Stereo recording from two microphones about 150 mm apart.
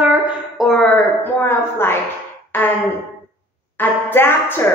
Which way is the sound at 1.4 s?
15° left (ahead or behind).